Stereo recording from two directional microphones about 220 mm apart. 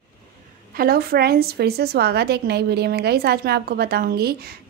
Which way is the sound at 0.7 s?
45° right (ahead or behind).